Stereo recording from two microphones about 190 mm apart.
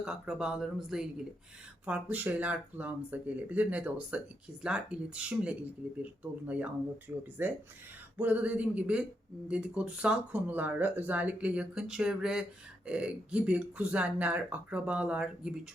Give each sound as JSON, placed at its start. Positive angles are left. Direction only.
{"t": 0.0, "sound": "speech", "side_deg": -5}
{"t": 7.4, "sound": "speech", "side_deg": -10}